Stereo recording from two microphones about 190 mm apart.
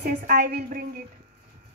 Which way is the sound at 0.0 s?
45° right (ahead or behind).